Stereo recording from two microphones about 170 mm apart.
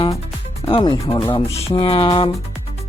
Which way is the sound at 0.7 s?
30° left (ahead or behind).